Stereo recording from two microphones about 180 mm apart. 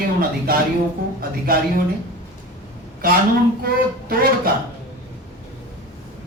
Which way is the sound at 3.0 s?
55° right (ahead or behind).